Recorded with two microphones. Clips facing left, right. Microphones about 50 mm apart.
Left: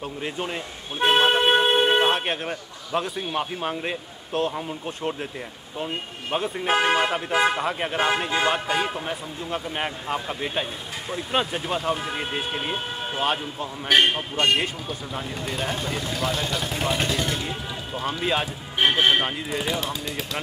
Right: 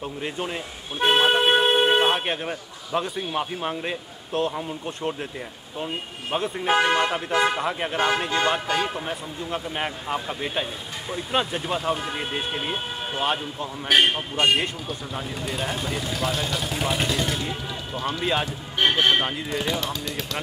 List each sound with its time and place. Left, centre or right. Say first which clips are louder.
0.0 s speech: even; centre
19.8 s speech: even; left